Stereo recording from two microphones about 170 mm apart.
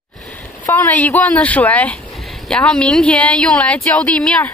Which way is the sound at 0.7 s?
10° left (ahead or behind).